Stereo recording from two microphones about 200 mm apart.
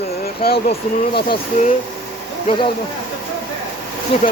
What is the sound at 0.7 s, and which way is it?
Speech, 25° left (ahead or behind).